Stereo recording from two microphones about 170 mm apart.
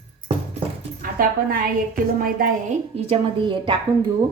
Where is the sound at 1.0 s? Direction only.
55° right (ahead or behind).